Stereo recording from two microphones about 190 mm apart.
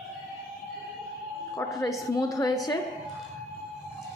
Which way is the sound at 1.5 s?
15° left (ahead or behind).